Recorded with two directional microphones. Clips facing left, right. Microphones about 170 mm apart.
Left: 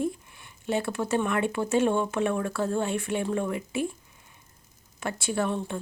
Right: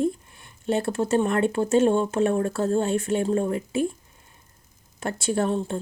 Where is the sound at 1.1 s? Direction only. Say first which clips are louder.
Right 4 dB; 40° right (ahead or behind).